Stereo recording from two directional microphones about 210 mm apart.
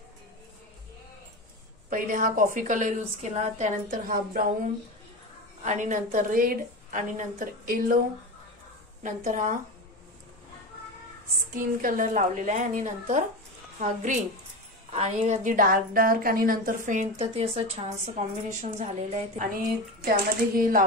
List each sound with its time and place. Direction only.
1.9 s a woman's voice: 40° right (ahead or behind)
5.6 s a woman's voice: 35° right (ahead or behind)
9.0 s a woman's voice: 35° right (ahead or behind)
11.5 s a woman's voice: 40° right (ahead or behind)
20.1 s speech: 45° right (ahead or behind)